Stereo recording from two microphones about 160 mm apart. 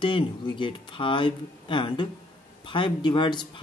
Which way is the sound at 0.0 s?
30° left (ahead or behind).